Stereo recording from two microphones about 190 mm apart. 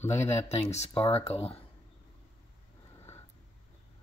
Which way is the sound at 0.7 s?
30° left (ahead or behind).